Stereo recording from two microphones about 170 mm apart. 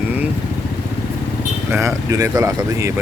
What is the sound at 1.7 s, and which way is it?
Speech, 20° right (ahead or behind).